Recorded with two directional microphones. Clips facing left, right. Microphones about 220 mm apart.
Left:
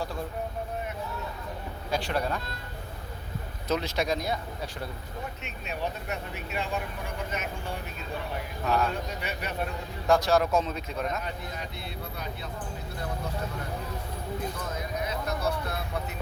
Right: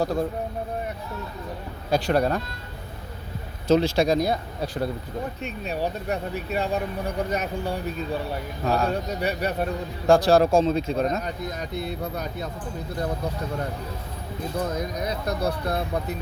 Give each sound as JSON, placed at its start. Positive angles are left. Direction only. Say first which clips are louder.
{"t": 0.0, "sound": "speech", "louder": "right 10 dB", "side_deg": -40}
{"t": 1.9, "sound": "speech", "louder": "right 8 dB", "side_deg": -40}
{"t": 3.7, "sound": "speech", "louder": "right 9 dB", "side_deg": -30}
{"t": 14.6, "sound": "speech", "louder": "right 6 dB", "side_deg": -40}